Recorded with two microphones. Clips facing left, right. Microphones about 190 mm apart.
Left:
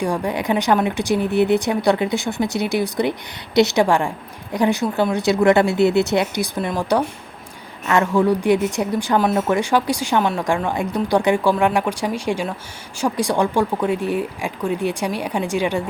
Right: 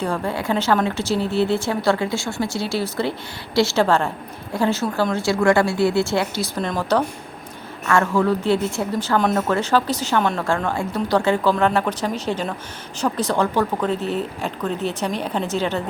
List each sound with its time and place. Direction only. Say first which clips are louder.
0.0 s speech: left 2 dB; 15° left (ahead or behind)